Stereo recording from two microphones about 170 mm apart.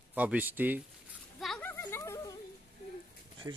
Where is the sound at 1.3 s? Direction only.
Centre (ahead or behind).